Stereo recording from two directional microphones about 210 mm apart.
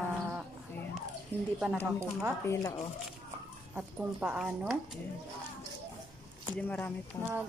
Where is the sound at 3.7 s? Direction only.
5° right (ahead or behind).